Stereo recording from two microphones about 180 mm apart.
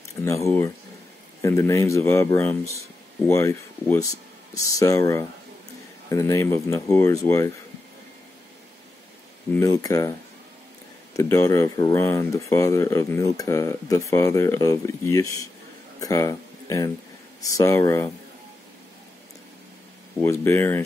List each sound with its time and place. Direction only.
0.2 s speech: 15° left (ahead or behind)
9.5 s speech: 15° left (ahead or behind)
11.1 s speech: 15° left (ahead or behind)
20.2 s speech: 15° left (ahead or behind)